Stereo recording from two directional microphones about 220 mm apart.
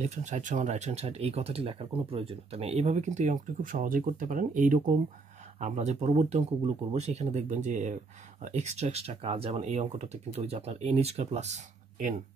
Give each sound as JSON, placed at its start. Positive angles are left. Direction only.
{"t": 0.0, "sound": "speech", "side_deg": -30}